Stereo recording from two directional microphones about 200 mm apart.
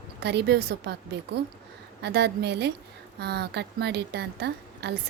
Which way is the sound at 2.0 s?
55° right (ahead or behind).